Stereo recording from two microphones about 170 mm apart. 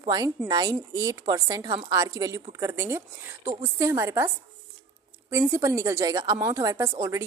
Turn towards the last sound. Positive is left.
turn(degrees=-15)  # may be behind; listen again after turning